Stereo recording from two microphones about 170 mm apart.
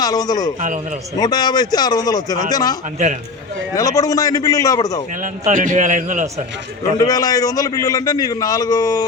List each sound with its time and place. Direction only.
0.0 s a man's voice: 20° left (ahead or behind)
3.8 s a man's voice: 20° left (ahead or behind)
5.2 s a man's voice: 50° right (ahead or behind)
7.0 s a man's voice: 20° left (ahead or behind)